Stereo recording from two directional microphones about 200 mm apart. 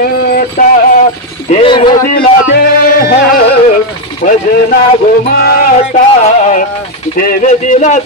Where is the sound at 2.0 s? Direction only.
50° left (ahead or behind).